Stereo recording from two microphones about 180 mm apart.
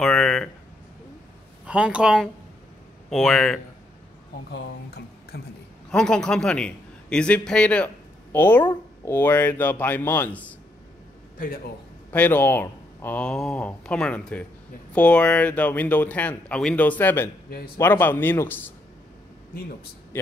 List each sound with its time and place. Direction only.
0.0 s a sound: centre (ahead or behind)
1.7 s speech: 5° right (ahead or behind)
4.5 s speech: 70° left (ahead or behind)
5.9 s a man's voice: 5° left (ahead or behind)
11.3 s a man's voice: 50° left (ahead or behind)
12.1 s speech: 10° left (ahead or behind)